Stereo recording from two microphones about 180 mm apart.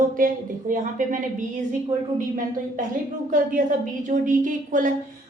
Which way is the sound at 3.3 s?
45° right (ahead or behind).